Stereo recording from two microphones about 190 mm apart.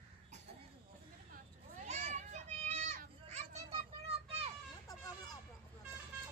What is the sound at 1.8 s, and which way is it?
Children playing, 35° right (ahead or behind).